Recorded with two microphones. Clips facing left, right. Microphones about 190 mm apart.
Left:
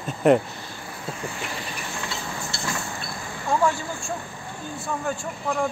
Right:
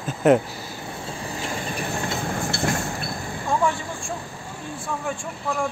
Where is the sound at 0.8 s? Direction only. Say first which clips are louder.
Left 1 dB; 30° right (ahead or behind).